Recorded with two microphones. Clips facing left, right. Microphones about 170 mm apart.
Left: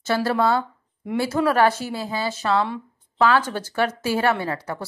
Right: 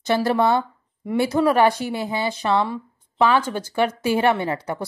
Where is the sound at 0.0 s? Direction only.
15° right (ahead or behind).